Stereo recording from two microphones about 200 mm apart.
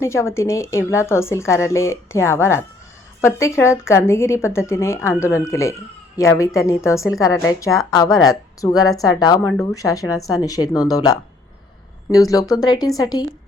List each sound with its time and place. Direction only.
0.0 s a woman's voice: 15° left (ahead or behind)